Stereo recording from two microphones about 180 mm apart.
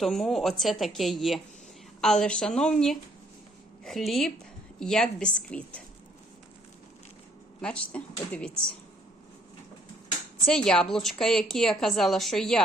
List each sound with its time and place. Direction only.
0.0 s a woman's voice: centre (ahead or behind)
7.6 s speech: 5° left (ahead or behind)
10.4 s a woman's voice: 5° left (ahead or behind)